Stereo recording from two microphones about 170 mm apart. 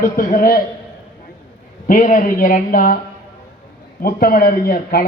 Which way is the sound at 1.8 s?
50° left (ahead or behind).